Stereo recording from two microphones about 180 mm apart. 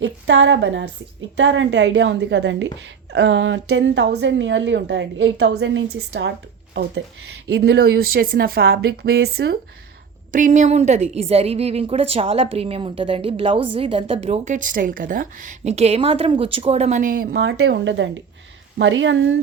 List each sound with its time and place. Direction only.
0.0 s a woman's voice: 85° right
6.8 s speech: 90° right
7.4 s speech: 70° right (ahead or behind)
10.3 s a woman's voice: 45° right (ahead or behind)
17.3 s speech: 80° right